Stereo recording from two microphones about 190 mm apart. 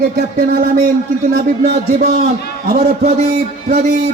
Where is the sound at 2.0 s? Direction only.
35° right (ahead or behind).